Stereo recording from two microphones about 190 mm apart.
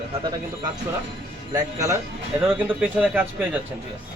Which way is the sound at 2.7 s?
5° right (ahead or behind).